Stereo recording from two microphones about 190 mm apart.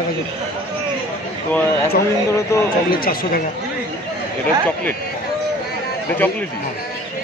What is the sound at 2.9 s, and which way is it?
Speech, 50° left (ahead or behind).